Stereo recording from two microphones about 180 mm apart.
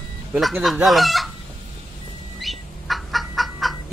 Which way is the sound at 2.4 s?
Centre (ahead or behind).